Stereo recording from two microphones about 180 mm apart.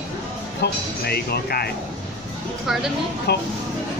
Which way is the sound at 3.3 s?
65° left (ahead or behind).